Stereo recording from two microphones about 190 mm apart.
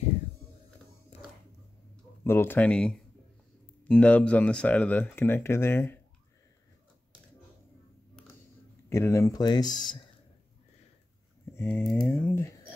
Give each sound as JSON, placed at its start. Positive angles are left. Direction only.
{"t": 2.2, "sound": "speech", "side_deg": 10}
{"t": 8.8, "sound": "speech", "side_deg": 15}
{"t": 11.5, "sound": "speech", "side_deg": 10}